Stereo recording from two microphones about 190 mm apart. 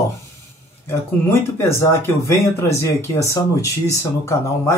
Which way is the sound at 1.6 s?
15° left (ahead or behind).